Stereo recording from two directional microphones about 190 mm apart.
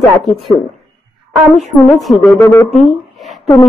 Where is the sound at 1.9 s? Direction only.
Centre (ahead or behind).